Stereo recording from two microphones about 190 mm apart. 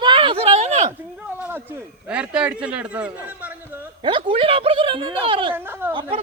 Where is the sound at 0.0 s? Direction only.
25° right (ahead or behind).